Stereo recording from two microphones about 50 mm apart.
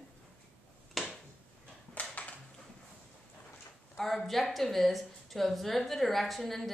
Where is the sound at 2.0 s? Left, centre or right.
Left.